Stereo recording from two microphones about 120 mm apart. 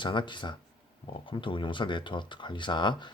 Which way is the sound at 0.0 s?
40° left (ahead or behind).